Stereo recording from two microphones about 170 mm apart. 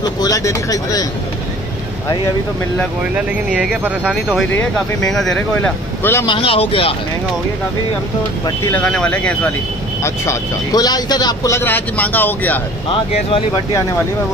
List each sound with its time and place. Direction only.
0.0 s speech: 20° left (ahead or behind)
3.0 s speech: 5° right (ahead or behind); by 6.2 s 10° left (ahead or behind)
6.2 s speech: 30° left (ahead or behind)
8.6 s speech: 5° left (ahead or behind)
10.0 s speech: 20° left (ahead or behind)